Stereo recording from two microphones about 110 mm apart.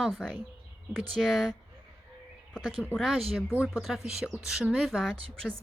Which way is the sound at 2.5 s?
5° left (ahead or behind).